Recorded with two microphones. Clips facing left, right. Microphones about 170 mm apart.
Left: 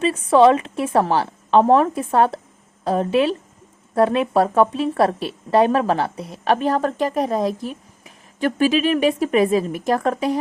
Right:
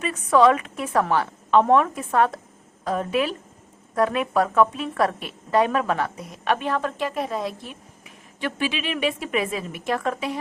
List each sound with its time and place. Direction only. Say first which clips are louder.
0.0 s a woman's voice: left 4 dB; 30° left (ahead or behind)